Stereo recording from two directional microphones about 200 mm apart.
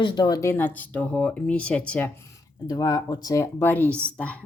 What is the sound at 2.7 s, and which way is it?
Speech, 20° left (ahead or behind).